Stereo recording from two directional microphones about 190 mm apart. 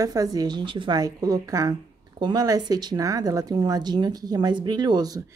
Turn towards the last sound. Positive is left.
turn(degrees=-20)  # may be behind; listen again after turning